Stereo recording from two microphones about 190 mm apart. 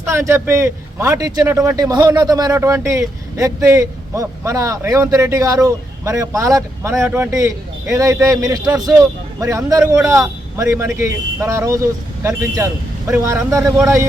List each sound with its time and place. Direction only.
0.0 s speech: 15° right (ahead or behind)